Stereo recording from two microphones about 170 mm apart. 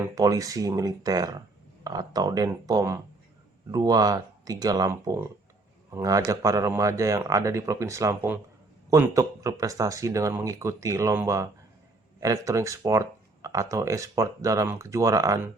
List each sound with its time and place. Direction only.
0.0 s speech: 20° right (ahead or behind)